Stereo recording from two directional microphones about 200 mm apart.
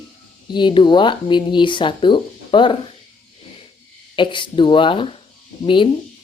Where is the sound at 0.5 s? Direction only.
25° left (ahead or behind).